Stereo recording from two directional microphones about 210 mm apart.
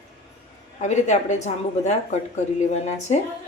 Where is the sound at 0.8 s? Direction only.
35° left (ahead or behind).